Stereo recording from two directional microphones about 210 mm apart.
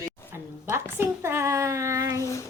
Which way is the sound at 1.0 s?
10° right (ahead or behind).